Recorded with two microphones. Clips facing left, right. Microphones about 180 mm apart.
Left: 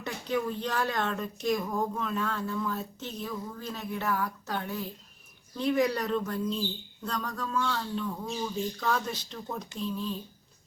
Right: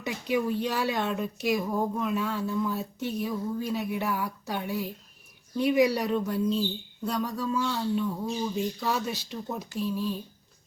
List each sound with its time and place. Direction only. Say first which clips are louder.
0.0 s speech: right 3 dB; 10° right (ahead or behind)